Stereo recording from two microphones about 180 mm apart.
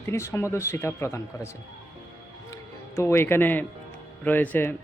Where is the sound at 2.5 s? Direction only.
15° left (ahead or behind).